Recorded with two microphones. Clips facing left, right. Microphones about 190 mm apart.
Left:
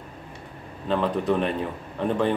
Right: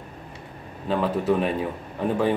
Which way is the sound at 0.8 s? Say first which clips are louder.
Right 1 dB; 5° right (ahead or behind).